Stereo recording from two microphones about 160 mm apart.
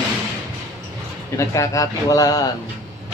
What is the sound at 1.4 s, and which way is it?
Speech, 20° left (ahead or behind).